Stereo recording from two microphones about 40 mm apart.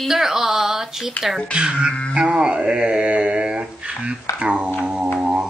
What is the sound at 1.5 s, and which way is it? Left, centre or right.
Mantra, right.